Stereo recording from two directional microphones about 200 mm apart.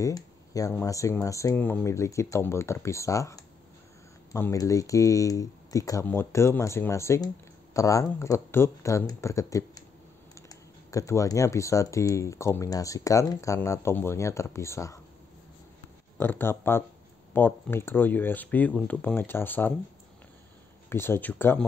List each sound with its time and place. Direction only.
0.0 s speech: 15° left (ahead or behind)
16.2 s speech: 10° left (ahead or behind)
20.9 s speech: 10° left (ahead or behind)